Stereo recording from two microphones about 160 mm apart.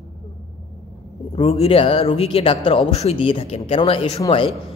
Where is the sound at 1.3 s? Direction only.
40° left (ahead or behind).